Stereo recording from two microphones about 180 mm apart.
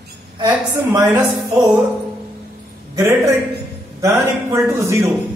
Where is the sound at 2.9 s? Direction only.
15° right (ahead or behind).